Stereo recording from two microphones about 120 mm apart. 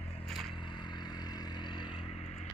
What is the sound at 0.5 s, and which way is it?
Vehicle, 40° left (ahead or behind).